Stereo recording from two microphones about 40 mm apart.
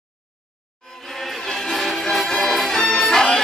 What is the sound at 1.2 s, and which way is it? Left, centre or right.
Music, centre.